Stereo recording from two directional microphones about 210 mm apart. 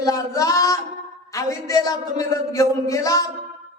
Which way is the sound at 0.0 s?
15° left (ahead or behind).